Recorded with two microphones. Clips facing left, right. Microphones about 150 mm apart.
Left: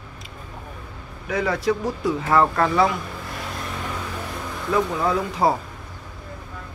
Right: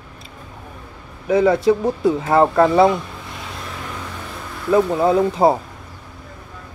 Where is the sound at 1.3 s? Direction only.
25° right (ahead or behind).